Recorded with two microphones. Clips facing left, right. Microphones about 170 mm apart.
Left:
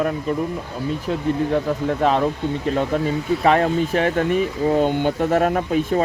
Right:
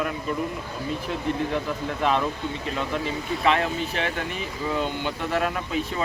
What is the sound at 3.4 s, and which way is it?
Speech, 45° left (ahead or behind).